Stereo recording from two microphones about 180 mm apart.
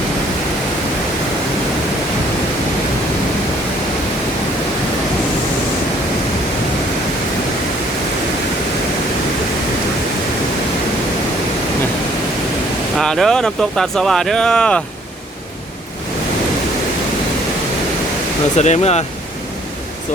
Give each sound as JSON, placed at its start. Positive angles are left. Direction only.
{"t": 13.0, "sound": "speech", "side_deg": 0}
{"t": 18.5, "sound": "speech", "side_deg": 40}